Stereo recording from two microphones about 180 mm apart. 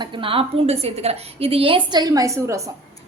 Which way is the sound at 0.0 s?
30° right (ahead or behind).